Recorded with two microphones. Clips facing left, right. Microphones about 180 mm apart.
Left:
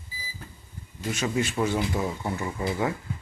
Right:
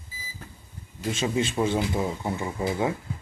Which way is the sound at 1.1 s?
25° right (ahead or behind).